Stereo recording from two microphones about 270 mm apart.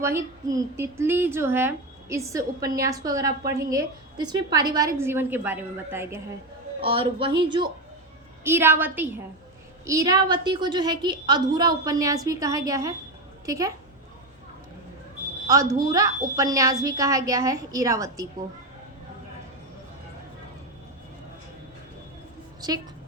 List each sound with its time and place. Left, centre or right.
0.0 s a woman's voice: centre
6.8 s a woman's voice: centre
15.7 s a woman's voice: centre